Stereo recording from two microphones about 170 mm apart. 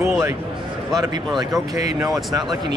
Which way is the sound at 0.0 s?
5° right (ahead or behind).